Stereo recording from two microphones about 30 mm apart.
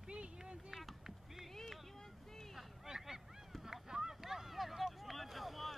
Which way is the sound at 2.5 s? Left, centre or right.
Centre.